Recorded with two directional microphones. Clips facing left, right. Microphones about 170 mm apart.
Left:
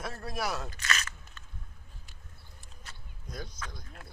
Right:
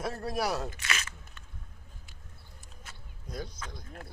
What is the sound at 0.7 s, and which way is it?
Crunch, 10° right (ahead or behind).